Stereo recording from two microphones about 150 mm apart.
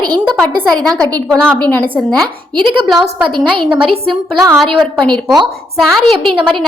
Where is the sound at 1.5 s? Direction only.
10° left (ahead or behind).